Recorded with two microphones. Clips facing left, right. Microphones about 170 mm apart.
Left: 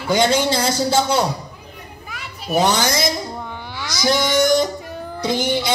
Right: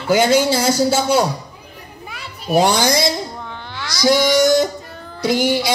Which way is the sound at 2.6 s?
15° right (ahead or behind).